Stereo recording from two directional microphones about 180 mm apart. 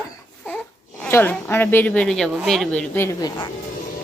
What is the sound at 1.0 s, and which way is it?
A woman's voice, 10° left (ahead or behind).